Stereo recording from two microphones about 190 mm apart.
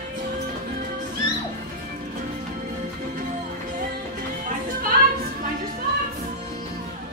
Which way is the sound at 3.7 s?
45° right (ahead or behind).